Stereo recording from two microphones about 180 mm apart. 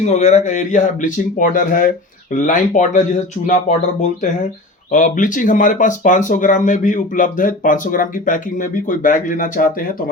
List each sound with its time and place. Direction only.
0.0 s speech: 40° left (ahead or behind)